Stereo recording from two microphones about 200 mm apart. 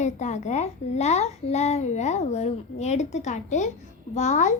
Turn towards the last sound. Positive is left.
turn(degrees=35)  # may be behind; listen again after turning